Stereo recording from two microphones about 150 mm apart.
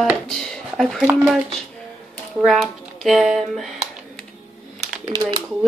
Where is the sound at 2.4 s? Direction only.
5° left (ahead or behind).